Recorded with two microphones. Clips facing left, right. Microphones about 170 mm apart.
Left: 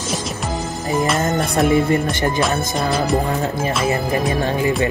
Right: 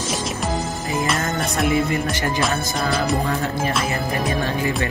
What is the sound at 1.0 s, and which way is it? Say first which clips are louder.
Music: left 4 dB; centre (ahead or behind).